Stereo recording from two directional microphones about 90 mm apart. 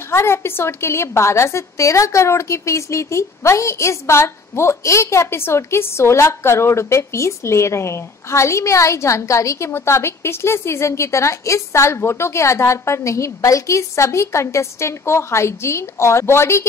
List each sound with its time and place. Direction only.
0.1 s a woman's voice: 30° left (ahead or behind)